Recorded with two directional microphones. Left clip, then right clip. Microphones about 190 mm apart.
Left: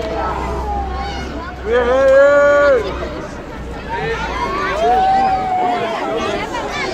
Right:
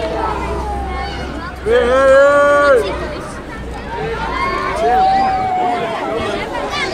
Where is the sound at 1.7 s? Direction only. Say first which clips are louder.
Right 2 dB; 55° right (ahead or behind).